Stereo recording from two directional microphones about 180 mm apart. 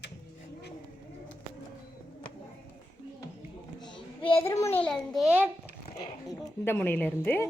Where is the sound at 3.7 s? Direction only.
25° left (ahead or behind).